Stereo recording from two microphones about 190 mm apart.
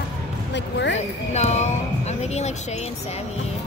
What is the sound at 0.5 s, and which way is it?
Speech, 65° left (ahead or behind).